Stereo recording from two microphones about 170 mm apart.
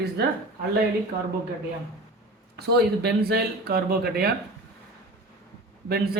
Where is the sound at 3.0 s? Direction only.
70° right (ahead or behind).